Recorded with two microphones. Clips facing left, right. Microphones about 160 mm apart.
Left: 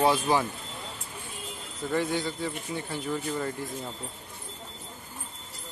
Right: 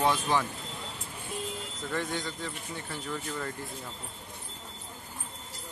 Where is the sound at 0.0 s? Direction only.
10° left (ahead or behind).